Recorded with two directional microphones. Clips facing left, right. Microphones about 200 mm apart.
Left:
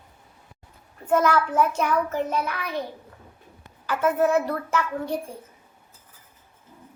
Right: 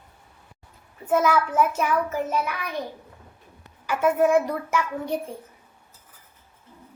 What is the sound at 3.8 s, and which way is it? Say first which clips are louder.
A child's voice: right 1 dB; 10° right (ahead or behind).